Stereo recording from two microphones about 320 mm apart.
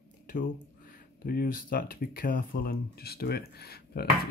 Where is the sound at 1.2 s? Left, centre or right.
Left.